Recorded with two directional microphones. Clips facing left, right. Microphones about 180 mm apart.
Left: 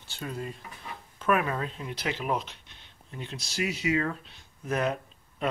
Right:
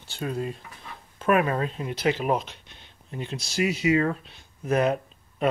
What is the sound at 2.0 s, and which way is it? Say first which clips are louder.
Speech: right 6 dB; 20° right (ahead or behind).